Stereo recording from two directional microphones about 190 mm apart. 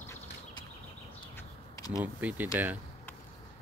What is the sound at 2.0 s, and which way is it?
Speech, 10° right (ahead or behind).